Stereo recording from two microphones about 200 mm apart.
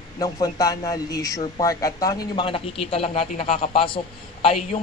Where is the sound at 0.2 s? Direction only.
15° left (ahead or behind).